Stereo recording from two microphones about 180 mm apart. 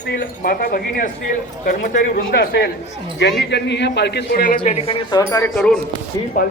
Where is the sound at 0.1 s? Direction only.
55° left (ahead or behind); by 4.9 s 35° left (ahead or behind).